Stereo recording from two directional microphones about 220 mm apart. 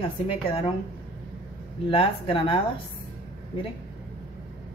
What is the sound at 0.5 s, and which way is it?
Speech, 25° left (ahead or behind).